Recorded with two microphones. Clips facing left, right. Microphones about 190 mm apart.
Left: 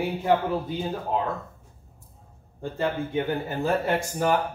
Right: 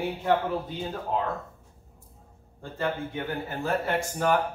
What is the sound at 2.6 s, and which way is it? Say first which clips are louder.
Speech: left 3 dB; 20° left (ahead or behind).